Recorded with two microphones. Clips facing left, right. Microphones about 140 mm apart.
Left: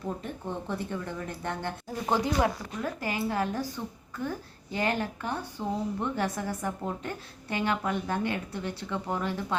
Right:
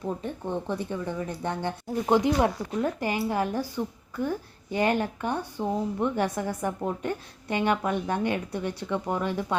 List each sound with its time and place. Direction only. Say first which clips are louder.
0.2 s speech: right 4 dB; 15° right (ahead or behind)